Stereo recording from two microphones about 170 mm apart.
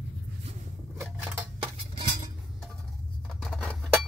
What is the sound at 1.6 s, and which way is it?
Cutlery, 30° right (ahead or behind).